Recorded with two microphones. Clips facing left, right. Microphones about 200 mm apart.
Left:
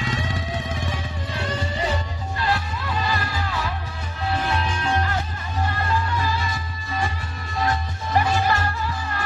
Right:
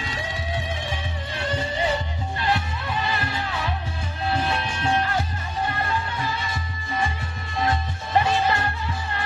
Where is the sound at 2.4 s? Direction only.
20° right (ahead or behind).